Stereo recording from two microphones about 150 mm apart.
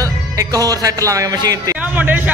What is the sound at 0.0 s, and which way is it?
Speech, 25° right (ahead or behind).